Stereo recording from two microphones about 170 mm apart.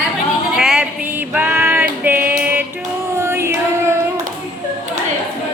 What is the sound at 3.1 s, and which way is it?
Music, 15° right (ahead or behind).